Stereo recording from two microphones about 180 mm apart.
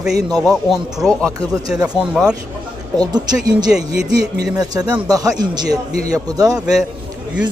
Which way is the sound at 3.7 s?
5° right (ahead or behind).